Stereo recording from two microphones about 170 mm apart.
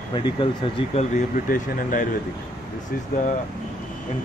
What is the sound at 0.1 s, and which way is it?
Speech, 30° left (ahead or behind).